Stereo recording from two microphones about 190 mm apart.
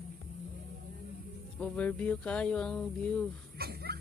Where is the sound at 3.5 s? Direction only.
55° right (ahead or behind).